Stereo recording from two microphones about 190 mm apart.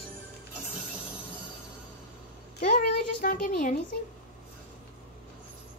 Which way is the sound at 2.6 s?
50° left (ahead or behind).